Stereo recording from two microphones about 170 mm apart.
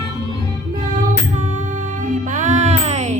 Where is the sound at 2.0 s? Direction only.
50° right (ahead or behind).